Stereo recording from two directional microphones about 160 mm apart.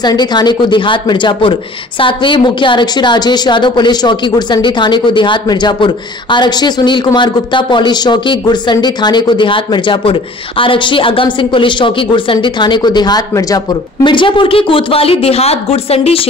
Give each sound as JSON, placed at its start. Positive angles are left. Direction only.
{"t": 0.0, "sound": "speech", "side_deg": 25}